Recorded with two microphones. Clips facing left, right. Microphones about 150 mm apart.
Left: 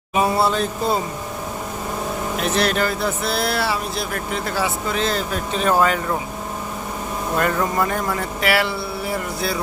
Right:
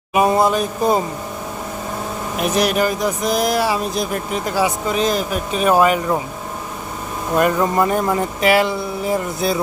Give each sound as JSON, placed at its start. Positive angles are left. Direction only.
{"t": 0.1, "sound": "speech", "side_deg": -15}
{"t": 2.4, "sound": "speech", "side_deg": -15}
{"t": 7.3, "sound": "speech", "side_deg": -20}